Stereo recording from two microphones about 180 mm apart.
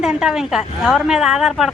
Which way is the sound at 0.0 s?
5° right (ahead or behind).